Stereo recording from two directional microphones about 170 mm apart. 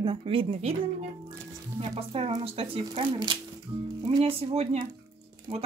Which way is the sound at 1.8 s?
35° right (ahead or behind).